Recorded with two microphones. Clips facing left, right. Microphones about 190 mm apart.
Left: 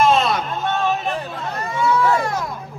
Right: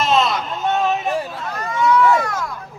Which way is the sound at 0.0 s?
50° left (ahead or behind).